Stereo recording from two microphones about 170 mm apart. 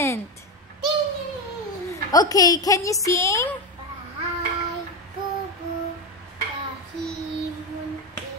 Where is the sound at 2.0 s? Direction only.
20° left (ahead or behind).